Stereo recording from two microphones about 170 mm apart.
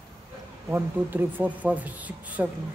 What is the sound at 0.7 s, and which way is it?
Speech, 10° right (ahead or behind).